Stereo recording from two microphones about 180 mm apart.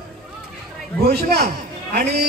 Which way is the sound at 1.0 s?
60° right (ahead or behind).